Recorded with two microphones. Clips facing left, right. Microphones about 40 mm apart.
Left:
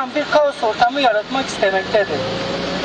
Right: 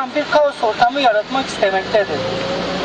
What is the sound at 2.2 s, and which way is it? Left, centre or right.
Vehicle, right.